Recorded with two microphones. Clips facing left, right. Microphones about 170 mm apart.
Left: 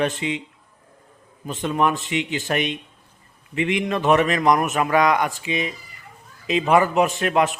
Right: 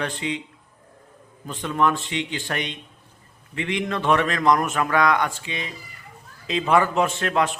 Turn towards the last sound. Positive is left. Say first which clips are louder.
# left 3 dB
turn(degrees=20)  # may be behind; listen again after turning